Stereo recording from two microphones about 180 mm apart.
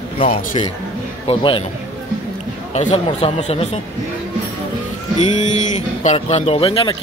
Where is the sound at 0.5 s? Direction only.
35° left (ahead or behind).